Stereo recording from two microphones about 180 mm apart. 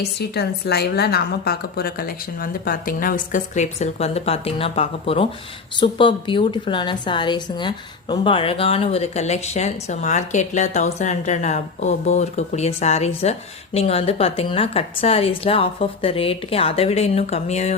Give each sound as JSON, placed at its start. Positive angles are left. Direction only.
{"t": 0.0, "sound": "a woman's voice", "side_deg": 65}